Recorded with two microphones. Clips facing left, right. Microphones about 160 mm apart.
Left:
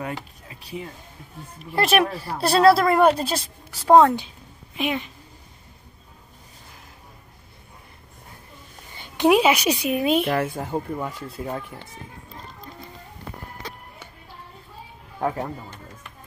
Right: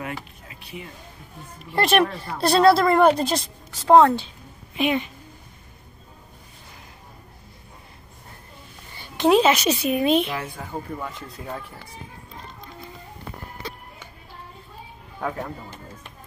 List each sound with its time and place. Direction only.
0.5 s speech: 35° left (ahead or behind)
1.7 s a woman's voice: 5° left (ahead or behind)
4.7 s a woman's voice: centre (ahead or behind)
8.9 s a woman's voice: 15° left (ahead or behind)
10.2 s speech: 50° left (ahead or behind)
10.7 s speech: 10° left (ahead or behind)
15.1 s speech: 25° left (ahead or behind)